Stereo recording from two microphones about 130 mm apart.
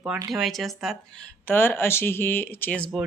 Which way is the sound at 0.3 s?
Centre (ahead or behind).